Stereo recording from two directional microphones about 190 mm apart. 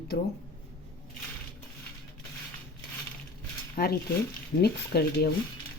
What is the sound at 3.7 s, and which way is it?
Speech, 55° left (ahead or behind).